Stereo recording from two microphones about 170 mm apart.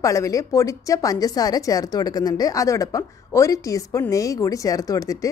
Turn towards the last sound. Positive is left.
turn(degrees=20)  # may be behind; listen again after turning